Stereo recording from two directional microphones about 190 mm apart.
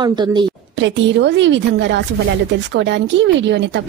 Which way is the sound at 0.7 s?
70° right (ahead or behind).